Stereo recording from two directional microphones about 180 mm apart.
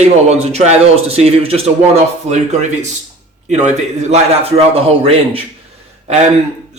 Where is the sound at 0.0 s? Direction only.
40° right (ahead or behind).